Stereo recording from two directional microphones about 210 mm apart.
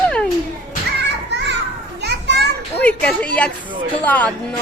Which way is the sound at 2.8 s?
5° left (ahead or behind).